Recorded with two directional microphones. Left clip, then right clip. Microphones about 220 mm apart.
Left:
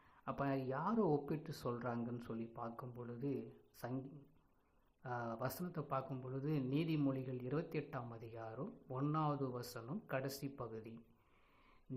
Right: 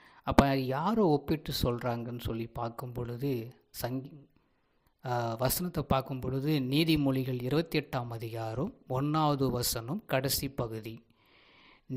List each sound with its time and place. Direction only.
0.3 s speech: 45° right (ahead or behind)
5.0 s speech: 40° right (ahead or behind)